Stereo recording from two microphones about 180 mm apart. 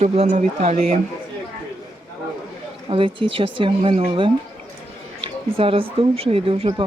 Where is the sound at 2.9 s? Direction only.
30° right (ahead or behind).